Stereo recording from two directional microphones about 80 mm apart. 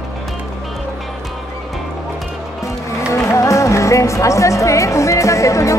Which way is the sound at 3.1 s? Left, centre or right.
Left.